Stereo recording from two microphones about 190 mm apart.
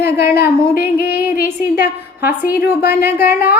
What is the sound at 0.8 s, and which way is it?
Speech, 55° left (ahead or behind).